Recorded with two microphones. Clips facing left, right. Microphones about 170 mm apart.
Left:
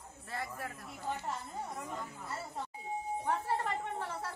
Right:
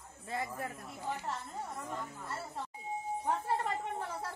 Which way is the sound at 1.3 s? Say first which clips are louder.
Even; centre (ahead or behind).